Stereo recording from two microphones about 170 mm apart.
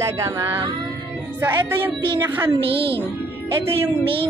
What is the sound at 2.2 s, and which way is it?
Speech, 10° right (ahead or behind).